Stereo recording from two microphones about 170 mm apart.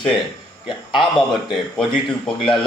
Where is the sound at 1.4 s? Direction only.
Centre (ahead or behind).